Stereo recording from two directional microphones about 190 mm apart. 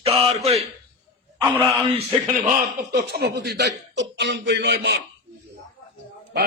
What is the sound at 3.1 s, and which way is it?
Speech, 60° right (ahead or behind).